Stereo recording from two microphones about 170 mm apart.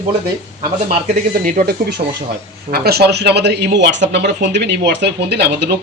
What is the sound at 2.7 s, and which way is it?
A man's voice, 65° right (ahead or behind).